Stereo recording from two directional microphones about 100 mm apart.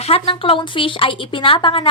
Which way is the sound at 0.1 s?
60° left (ahead or behind).